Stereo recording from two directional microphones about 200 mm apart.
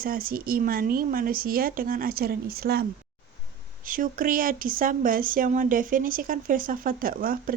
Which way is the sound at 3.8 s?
45° right (ahead or behind).